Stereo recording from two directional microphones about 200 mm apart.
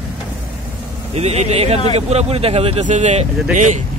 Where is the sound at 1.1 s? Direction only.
30° right (ahead or behind).